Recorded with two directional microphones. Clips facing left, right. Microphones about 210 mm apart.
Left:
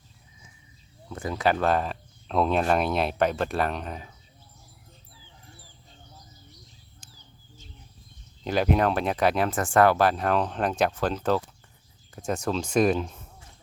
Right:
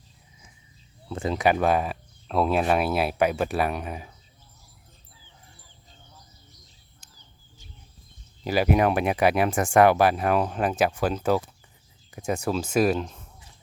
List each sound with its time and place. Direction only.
1.1 s speech: 25° right (ahead or behind)
8.4 s speech: 5° right (ahead or behind)